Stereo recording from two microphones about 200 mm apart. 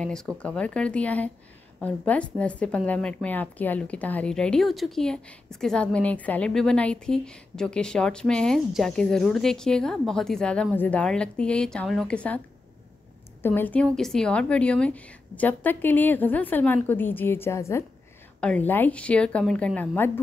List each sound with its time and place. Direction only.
0.0 s a woman's voice: 5° left (ahead or behind)
13.4 s a woman's voice: 10° left (ahead or behind)